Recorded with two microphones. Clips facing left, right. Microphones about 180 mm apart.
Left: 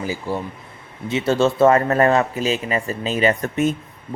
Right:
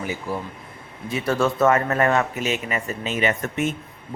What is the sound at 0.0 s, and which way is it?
Speech, 30° left (ahead or behind).